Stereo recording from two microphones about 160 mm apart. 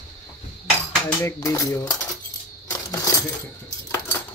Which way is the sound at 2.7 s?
20° left (ahead or behind).